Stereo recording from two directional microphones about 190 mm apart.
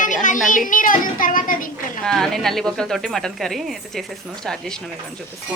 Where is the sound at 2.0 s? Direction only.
Centre (ahead or behind).